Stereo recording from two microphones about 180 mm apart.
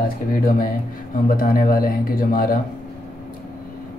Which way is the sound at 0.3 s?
50° left (ahead or behind).